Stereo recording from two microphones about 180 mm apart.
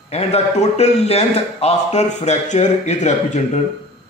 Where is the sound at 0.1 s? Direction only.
35° left (ahead or behind).